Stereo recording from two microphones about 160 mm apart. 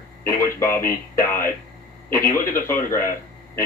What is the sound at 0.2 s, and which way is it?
Speech, 15° left (ahead or behind).